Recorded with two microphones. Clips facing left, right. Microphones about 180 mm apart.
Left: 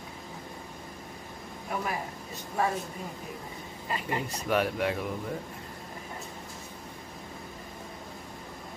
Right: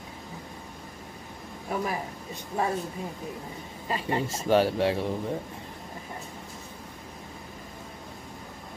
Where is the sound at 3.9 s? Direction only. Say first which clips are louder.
Right 4 dB; 30° right (ahead or behind).